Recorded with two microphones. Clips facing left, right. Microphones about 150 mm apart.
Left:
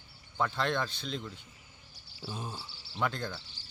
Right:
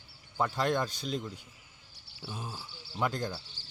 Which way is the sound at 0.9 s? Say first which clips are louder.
Right 3 dB; 40° right (ahead or behind).